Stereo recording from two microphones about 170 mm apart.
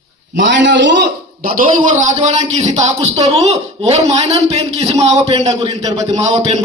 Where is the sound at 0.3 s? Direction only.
90° right.